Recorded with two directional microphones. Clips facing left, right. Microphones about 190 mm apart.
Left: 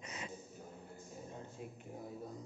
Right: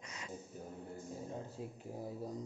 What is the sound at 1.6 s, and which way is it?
Speech, 25° right (ahead or behind).